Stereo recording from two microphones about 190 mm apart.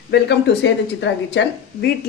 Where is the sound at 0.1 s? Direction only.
65° left (ahead or behind).